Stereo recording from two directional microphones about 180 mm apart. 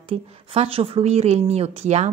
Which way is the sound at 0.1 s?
30° right (ahead or behind).